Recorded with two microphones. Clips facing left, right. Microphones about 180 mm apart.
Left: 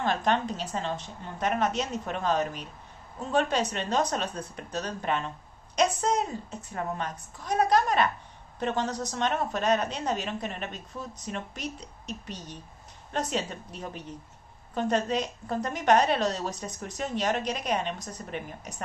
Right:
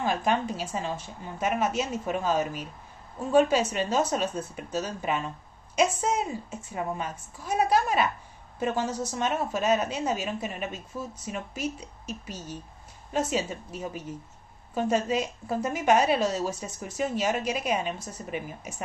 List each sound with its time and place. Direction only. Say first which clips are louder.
0.0 s a woman's voice: even; 5° right (ahead or behind)